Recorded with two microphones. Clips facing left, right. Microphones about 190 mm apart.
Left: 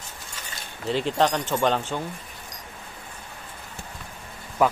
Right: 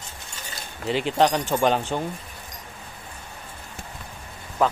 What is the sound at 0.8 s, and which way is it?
Speech, centre (ahead or behind).